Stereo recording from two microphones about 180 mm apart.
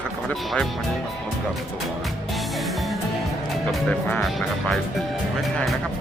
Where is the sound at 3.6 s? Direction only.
10° left (ahead or behind).